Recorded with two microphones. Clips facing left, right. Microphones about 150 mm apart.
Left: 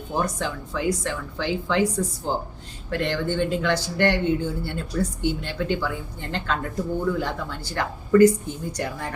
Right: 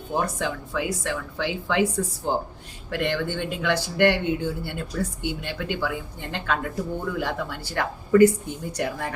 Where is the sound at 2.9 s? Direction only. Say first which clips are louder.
Left 1 dB; 15° right (ahead or behind).